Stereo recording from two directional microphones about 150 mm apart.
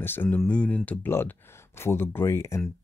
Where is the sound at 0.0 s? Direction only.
15° left (ahead or behind).